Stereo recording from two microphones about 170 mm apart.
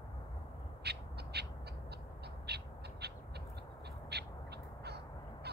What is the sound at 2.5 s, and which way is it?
Crow, 75° right (ahead or behind).